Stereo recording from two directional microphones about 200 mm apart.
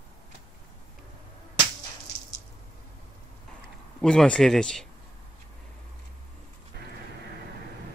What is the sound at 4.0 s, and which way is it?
Speech, 5° left (ahead or behind).